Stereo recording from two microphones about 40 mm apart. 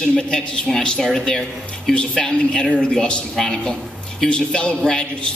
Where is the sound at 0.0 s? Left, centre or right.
Centre.